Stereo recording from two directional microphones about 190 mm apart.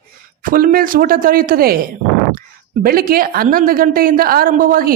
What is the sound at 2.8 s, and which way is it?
A woman's voice, 50° right (ahead or behind).